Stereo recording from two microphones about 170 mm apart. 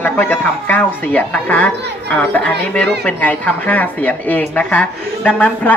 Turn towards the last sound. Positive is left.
turn(degrees=10)  # may be behind; listen again after turning